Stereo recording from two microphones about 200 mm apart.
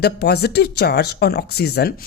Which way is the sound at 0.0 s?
55° left (ahead or behind).